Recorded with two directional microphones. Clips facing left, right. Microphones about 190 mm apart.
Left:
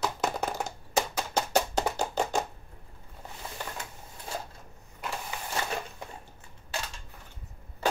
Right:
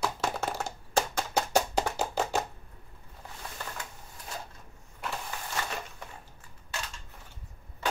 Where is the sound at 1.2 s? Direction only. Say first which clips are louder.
Even; centre (ahead or behind).